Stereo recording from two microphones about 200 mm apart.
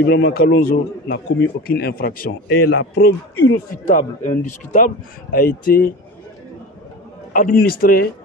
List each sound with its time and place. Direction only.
0.0 s a man's voice: 60° left (ahead or behind)
2.4 s a man's voice: 90° left
2.9 s a man's voice: 55° left (ahead or behind)
3.9 s a man's voice: 40° left (ahead or behind)
7.3 s speech: 45° left (ahead or behind)